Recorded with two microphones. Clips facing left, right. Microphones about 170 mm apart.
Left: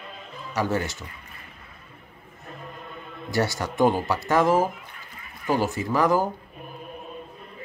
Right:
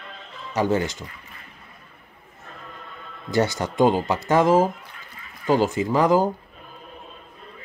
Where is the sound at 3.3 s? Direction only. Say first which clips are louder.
Right 3 dB; 20° right (ahead or behind).